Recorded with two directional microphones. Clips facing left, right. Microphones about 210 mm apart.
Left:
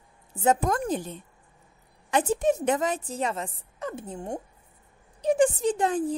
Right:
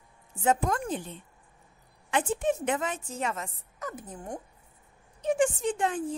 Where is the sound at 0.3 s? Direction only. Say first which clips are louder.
Left 3 dB; 40° left (ahead or behind).